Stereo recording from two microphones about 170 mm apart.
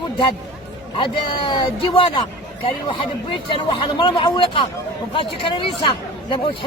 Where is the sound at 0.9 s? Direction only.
30° left (ahead or behind).